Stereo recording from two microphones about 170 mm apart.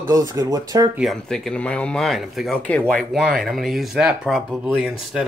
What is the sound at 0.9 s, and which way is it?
Speech, centre (ahead or behind).